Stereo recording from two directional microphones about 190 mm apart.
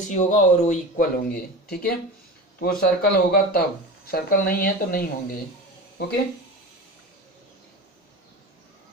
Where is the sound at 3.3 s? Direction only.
50° left (ahead or behind).